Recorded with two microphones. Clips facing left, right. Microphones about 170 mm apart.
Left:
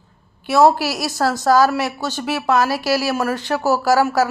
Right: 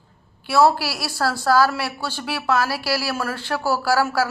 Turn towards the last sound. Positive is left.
turn(degrees=20)  # may be behind; listen again after turning